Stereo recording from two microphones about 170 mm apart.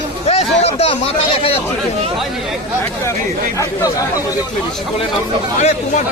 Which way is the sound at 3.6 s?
20° left (ahead or behind).